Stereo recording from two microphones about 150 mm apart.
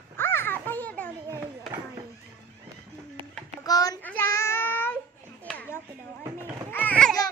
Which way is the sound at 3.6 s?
25° left (ahead or behind).